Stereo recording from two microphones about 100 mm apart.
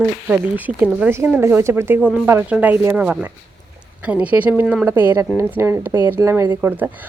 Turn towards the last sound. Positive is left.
turn(degrees=-20)  # may be behind; listen again after turning